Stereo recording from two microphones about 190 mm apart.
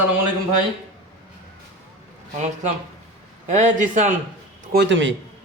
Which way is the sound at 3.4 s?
40° right (ahead or behind).